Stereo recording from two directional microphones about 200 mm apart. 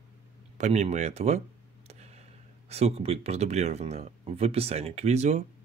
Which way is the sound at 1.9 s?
35° right (ahead or behind).